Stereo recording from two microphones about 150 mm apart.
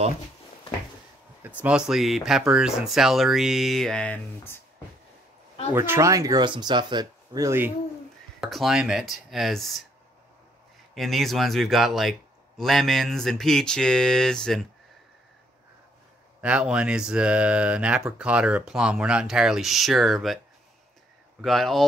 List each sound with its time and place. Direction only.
1.4 s speech: 10° right (ahead or behind); by 4.6 s 10° left (ahead or behind)
5.8 s speech: 20° right (ahead or behind)
8.4 s speech: centre (ahead or behind)
11.0 s speech: centre (ahead or behind)
16.3 s speech: 5° right (ahead or behind)
21.4 s speech: centre (ahead or behind)